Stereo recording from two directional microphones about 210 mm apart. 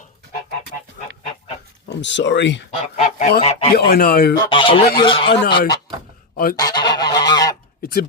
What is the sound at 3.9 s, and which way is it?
Speech, 45° left (ahead or behind).